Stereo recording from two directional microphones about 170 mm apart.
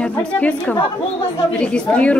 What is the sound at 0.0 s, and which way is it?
A woman's voice, 5° left (ahead or behind).